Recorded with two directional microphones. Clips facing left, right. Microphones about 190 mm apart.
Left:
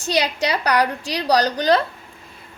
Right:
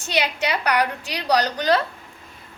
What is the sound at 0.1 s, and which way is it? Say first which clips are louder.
A woman's voice: left 3 dB; 35° left (ahead or behind).